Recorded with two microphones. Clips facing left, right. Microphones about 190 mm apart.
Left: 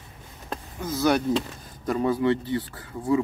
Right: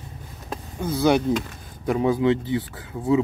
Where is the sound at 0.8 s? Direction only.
30° right (ahead or behind).